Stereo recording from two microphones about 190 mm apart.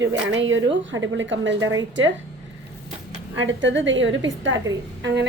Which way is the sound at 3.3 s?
80° right.